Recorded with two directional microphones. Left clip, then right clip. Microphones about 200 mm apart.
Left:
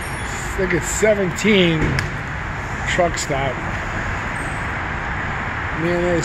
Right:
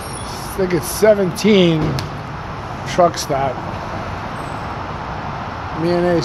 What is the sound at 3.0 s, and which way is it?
Speech, 30° right (ahead or behind).